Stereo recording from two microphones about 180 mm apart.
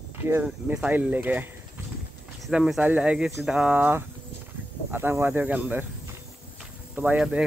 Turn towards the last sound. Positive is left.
turn(degrees=-5)  # may be behind; listen again after turning